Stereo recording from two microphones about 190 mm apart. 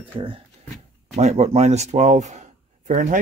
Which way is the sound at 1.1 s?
35° right (ahead or behind).